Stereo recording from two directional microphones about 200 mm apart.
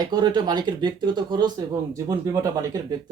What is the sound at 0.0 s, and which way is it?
Speech, 20° right (ahead or behind).